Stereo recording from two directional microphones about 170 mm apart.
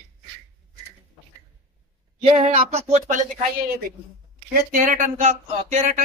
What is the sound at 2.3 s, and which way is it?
Speech, 40° right (ahead or behind).